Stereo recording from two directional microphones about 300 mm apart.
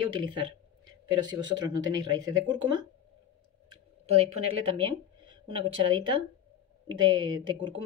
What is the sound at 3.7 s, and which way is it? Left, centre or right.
Clicking, right.